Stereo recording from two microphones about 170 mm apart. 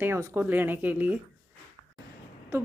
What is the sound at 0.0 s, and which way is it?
A woman's voice, 15° right (ahead or behind).